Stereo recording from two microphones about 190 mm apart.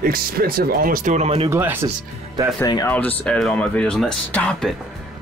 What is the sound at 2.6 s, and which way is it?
Speech, 20° left (ahead or behind).